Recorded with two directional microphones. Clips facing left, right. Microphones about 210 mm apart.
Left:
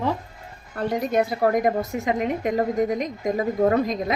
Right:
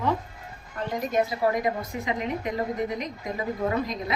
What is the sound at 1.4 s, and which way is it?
A woman's voice, 50° left (ahead or behind).